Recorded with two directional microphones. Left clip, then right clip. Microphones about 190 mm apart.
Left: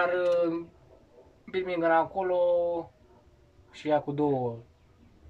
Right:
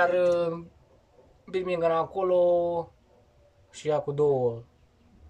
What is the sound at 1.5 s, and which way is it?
Speech, 5° right (ahead or behind).